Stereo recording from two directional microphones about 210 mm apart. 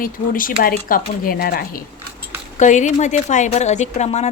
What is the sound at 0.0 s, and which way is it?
Speech, 40° left (ahead or behind).